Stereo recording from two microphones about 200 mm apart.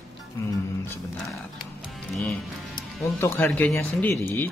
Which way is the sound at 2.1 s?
Centre (ahead or behind).